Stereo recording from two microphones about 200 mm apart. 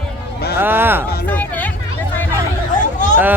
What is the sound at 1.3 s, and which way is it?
Hubbub, 10° left (ahead or behind).